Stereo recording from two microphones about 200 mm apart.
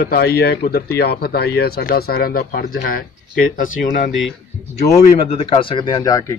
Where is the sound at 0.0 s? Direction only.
50° left (ahead or behind).